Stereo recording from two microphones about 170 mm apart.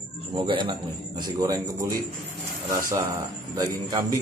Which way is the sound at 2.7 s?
20° right (ahead or behind).